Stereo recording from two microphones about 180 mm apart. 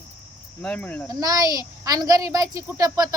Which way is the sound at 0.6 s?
5° left (ahead or behind).